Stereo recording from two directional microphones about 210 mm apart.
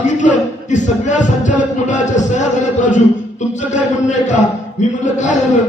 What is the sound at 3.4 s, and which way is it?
Music, 35° left (ahead or behind).